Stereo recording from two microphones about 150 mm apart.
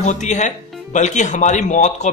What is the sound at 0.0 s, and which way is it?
Speech, 55° left (ahead or behind).